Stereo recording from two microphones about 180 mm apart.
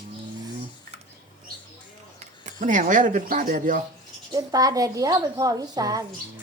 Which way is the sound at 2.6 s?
45° right (ahead or behind).